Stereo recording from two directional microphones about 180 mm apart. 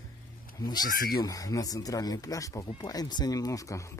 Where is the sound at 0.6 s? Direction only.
20° left (ahead or behind).